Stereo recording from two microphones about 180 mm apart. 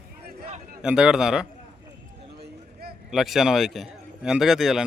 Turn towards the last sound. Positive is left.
turn(degrees=0)  # may be behind; listen again after turning